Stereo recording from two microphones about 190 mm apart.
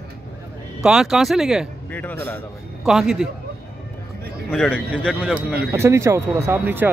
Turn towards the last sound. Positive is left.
turn(degrees=-10)  # may be behind; listen again after turning